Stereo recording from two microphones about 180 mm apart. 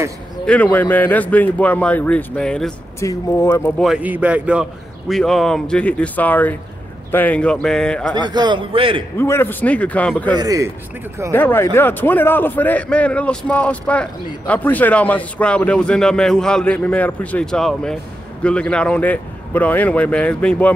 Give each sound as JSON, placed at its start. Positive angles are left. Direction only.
{"t": 0.5, "sound": "a man's voice", "side_deg": 10}
{"t": 3.0, "sound": "a man's voice", "side_deg": 15}
{"t": 3.8, "sound": "a man's voice", "side_deg": -5}
{"t": 8.2, "sound": "a man's voice", "side_deg": -25}
{"t": 9.2, "sound": "a man's voice", "side_deg": 15}
{"t": 10.3, "sound": "a man's voice", "side_deg": -20}
{"t": 11.3, "sound": "a man's voice", "side_deg": 10}